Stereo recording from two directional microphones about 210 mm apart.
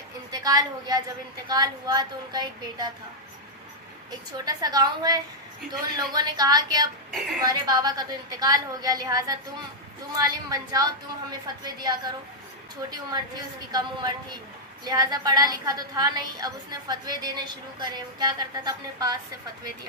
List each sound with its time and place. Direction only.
0.3 s a woman's voice: 20° right (ahead or behind)
4.3 s a woman's voice: 20° right (ahead or behind)